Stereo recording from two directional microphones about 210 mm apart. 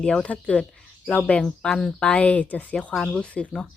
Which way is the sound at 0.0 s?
5° left (ahead or behind).